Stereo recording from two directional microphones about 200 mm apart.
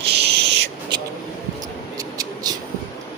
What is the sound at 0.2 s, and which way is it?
Owl, 55° right (ahead or behind).